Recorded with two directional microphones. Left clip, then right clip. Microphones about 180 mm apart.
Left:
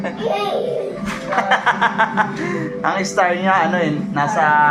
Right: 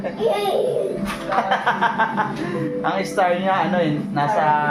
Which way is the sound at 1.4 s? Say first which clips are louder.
Left 5 dB; 20° left (ahead or behind).